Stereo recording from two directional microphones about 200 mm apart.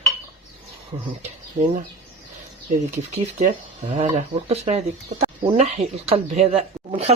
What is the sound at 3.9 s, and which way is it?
Speech, 30° right (ahead or behind).